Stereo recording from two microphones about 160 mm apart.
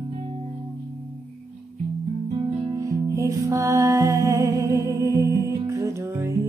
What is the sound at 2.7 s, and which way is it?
Music, 20° right (ahead or behind).